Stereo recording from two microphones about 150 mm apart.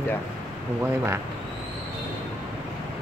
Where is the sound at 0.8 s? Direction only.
15° right (ahead or behind).